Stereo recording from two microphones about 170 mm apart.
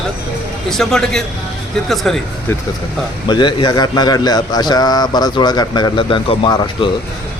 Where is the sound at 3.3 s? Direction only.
25° left (ahead or behind).